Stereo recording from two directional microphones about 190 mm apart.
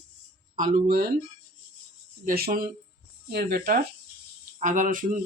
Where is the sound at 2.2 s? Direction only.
50° right (ahead or behind).